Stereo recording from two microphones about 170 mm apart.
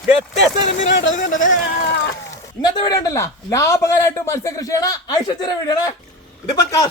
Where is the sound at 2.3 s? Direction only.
20° left (ahead or behind).